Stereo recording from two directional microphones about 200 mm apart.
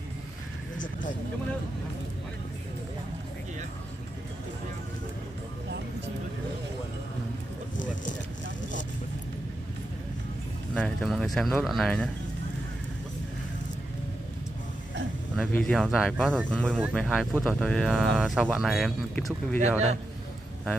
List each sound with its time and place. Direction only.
7.8 s a sound: 40° left (ahead or behind)
10.7 s speech: 5° left (ahead or behind)
15.5 s speech: 5° left (ahead or behind)